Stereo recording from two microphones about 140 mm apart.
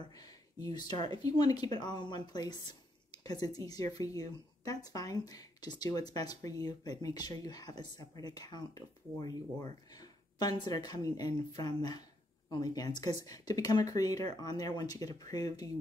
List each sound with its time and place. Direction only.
0.0 s speech: 25° left (ahead or behind)